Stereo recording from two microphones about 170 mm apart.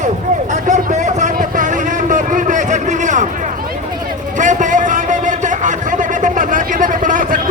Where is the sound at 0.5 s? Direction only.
45° right (ahead or behind).